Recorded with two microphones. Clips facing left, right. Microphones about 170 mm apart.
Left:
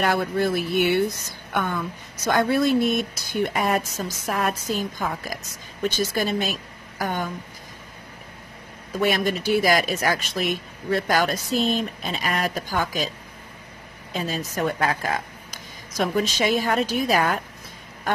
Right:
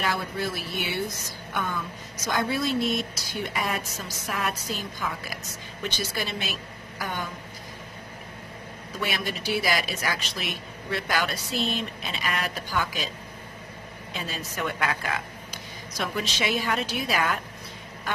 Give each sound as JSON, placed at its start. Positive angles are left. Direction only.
{"t": 0.0, "sound": "speech", "side_deg": 55}
{"t": 8.9, "sound": "speech", "side_deg": 45}
{"t": 14.1, "sound": "speech", "side_deg": 40}